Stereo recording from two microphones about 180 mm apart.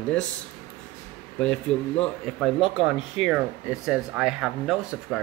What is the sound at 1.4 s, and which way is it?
Speech, 5° left (ahead or behind).